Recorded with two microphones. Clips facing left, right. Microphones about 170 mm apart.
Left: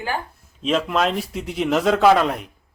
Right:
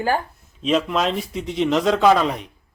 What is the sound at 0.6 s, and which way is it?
A woman's voice, centre (ahead or behind).